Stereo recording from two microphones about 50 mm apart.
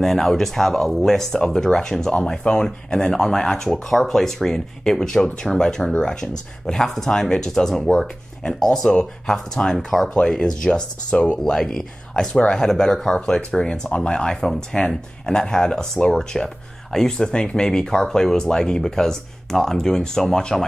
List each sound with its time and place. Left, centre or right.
0.0 s speech: centre
11.5 s speech: centre